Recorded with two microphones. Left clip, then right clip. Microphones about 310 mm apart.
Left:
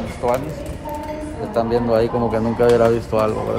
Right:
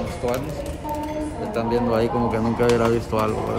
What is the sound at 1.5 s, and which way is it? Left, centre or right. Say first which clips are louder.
Speech: left 5 dB; centre.